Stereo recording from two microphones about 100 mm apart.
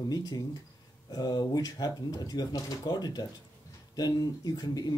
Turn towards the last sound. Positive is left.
turn(degrees=40)  # may be behind; listen again after turning